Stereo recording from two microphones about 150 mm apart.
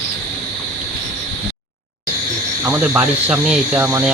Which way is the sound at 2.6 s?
10° right (ahead or behind).